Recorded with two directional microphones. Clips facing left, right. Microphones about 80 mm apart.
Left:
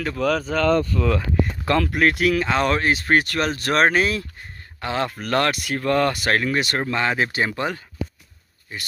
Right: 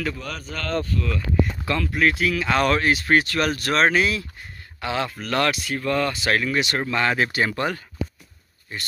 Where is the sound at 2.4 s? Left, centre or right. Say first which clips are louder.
Even; left.